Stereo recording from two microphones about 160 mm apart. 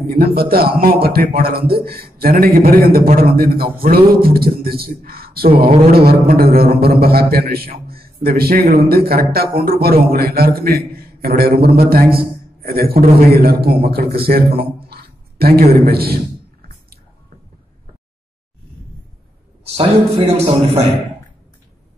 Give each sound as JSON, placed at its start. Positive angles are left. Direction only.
{"t": 0.0, "sound": "a man's voice", "side_deg": -70}
{"t": 19.6, "sound": "a man's voice", "side_deg": -35}